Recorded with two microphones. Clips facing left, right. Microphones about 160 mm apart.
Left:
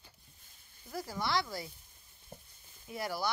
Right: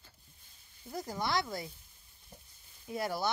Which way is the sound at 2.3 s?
55° left (ahead or behind).